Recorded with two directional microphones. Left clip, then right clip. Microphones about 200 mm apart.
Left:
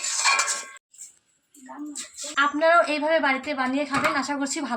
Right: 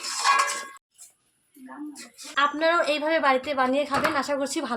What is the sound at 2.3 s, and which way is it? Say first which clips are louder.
A woman's voice: left 3 dB; 35° right (ahead or behind).